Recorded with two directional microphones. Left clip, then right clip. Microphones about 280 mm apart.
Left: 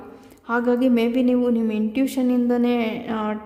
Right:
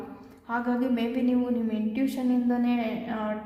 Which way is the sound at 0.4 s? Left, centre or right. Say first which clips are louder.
Left 8 dB; left.